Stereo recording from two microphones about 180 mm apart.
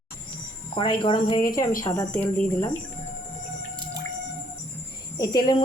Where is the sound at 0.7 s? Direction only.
25° left (ahead or behind).